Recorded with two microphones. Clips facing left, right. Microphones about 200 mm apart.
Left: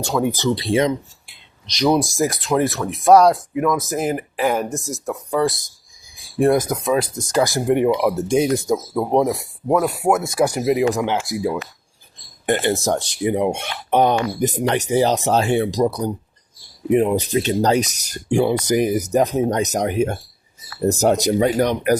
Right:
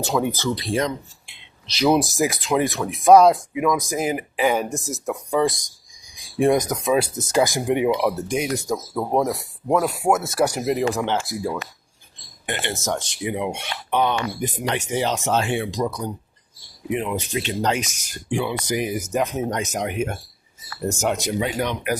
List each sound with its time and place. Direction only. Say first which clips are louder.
0.0 s speech: left 1 dB; centre (ahead or behind)
0.3 s speech: left 4 dB; 15° left (ahead or behind)
1.8 s speech: left 1 dB; 5° right (ahead or behind)
5.6 s cricket: even; 5° left (ahead or behind)
6.4 s speech: left 2 dB; 5° left (ahead or behind)
6.9 s speech: even; 15° right (ahead or behind)
7.4 s speech: left 6 dB; centre (ahead or behind)
8.3 s speech: left 6 dB; 25° left (ahead or behind)
9.2 s speech: left 4 dB; 10° left (ahead or behind)
12.5 s speech: left 8 dB; 40° left (ahead or behind)